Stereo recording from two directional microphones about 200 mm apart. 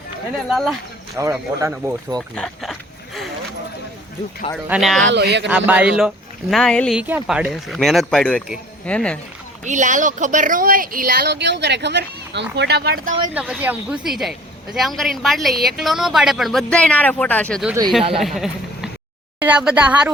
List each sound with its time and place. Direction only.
0.5 s speech: centre (ahead or behind)
1.2 s speech: 15° right (ahead or behind)
2.1 s a woman's voice: 5° left (ahead or behind)
4.7 s a woman's voice: centre (ahead or behind)
5.0 s speech: 55° right (ahead or behind)
5.5 s a woman's voice: 5° right (ahead or behind)
9.6 s speech: 40° right (ahead or behind)
13.3 s a woman's voice: 5° right (ahead or behind)